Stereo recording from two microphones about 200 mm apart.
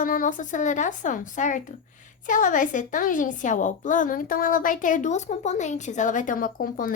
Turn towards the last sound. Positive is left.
turn(degrees=45)  # may be behind; listen again after turning